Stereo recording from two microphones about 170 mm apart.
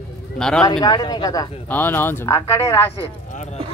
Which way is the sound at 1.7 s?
10° left (ahead or behind).